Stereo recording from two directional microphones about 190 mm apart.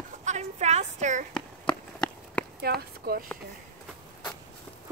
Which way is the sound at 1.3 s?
5° left (ahead or behind).